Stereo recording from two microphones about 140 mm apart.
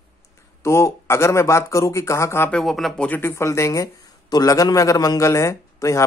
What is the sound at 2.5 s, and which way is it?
Speech, centre (ahead or behind).